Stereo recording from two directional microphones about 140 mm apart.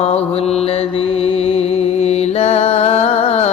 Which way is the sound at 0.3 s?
45° left (ahead or behind).